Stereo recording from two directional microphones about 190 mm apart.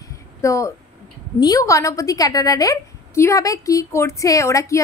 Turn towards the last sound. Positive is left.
turn(degrees=15)  # may be behind; listen again after turning